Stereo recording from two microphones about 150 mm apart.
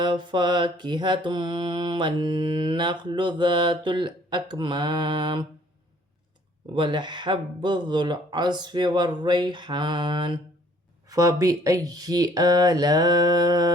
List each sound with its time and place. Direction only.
0.0 s mantra: 30° right (ahead or behind)
6.7 s mantra: 30° right (ahead or behind)
11.1 s speech: 25° right (ahead or behind)